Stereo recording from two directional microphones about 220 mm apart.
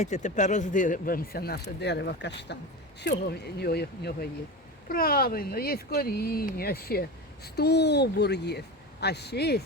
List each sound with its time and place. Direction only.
0.0 s speech: 30° left (ahead or behind)